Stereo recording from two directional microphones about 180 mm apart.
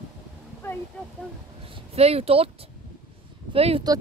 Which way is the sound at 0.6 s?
15° left (ahead or behind).